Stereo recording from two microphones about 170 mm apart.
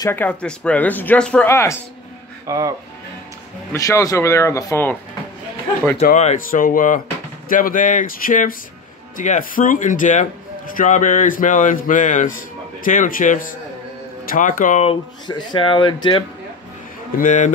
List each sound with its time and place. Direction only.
0.0 s speech: 10° left (ahead or behind)
2.4 s speech: 20° right (ahead or behind)
3.7 s speech: 20° left (ahead or behind)
6.1 s speech: 50° left (ahead or behind)
14.9 s speech: 25° left (ahead or behind)
17.2 s speech: 50° left (ahead or behind)